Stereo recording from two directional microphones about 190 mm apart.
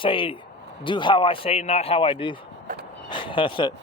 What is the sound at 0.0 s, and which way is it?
Speech, 25° left (ahead or behind).